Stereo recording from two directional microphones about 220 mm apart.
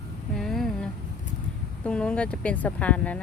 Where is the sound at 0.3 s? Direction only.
Centre (ahead or behind).